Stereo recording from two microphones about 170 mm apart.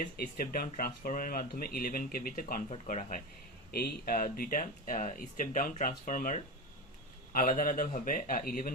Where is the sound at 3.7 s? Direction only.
60° left (ahead or behind).